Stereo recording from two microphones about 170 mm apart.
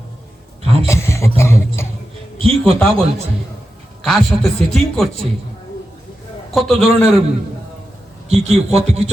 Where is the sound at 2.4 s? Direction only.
35° right (ahead or behind).